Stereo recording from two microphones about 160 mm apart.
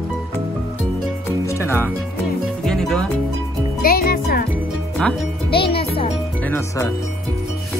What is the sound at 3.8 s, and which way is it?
Music, 70° left (ahead or behind).